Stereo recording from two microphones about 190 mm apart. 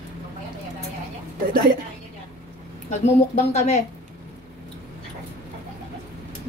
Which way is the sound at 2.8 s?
35° left (ahead or behind).